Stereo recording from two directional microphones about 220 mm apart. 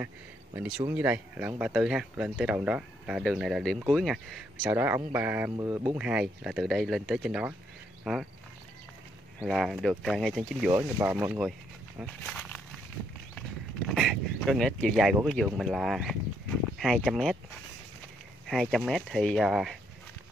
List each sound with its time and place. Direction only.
0.6 s speech: 10° right (ahead or behind)
9.4 s speech: centre (ahead or behind)
10.7 s speech: 10° right (ahead or behind)
12.2 s a sound: 5° left (ahead or behind)
13.8 s speech: centre (ahead or behind)
18.5 s speech: centre (ahead or behind)